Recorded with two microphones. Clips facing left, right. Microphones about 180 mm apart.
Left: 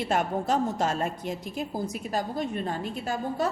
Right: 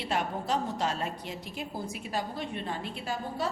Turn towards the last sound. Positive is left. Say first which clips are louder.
# left 5 dB
turn(degrees=45)  # may be behind; listen again after turning